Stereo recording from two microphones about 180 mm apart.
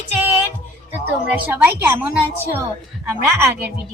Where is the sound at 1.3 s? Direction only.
10° right (ahead or behind).